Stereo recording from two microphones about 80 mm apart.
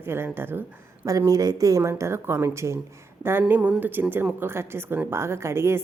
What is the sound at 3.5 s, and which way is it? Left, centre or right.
A woman's voice, right.